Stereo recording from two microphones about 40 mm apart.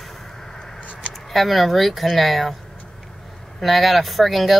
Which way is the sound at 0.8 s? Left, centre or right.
Left.